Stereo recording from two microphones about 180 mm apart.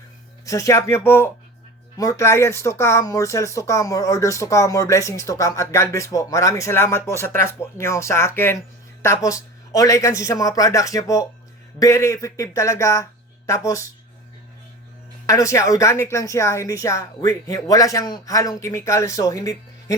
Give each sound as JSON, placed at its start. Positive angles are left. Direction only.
{"t": 0.4, "sound": "speech", "side_deg": 20}
{"t": 15.3, "sound": "speech", "side_deg": 15}